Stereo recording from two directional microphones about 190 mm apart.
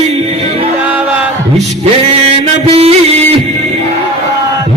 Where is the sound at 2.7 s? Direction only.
30° right (ahead or behind).